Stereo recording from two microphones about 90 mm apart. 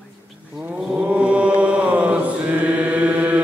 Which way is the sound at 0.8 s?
10° right (ahead or behind).